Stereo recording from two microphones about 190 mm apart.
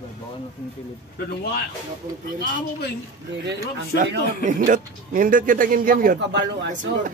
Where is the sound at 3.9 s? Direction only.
60° right (ahead or behind).